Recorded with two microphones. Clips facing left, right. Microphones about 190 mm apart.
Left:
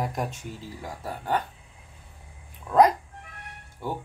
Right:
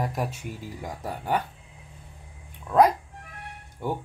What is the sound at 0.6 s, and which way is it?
Speech, 15° right (ahead or behind).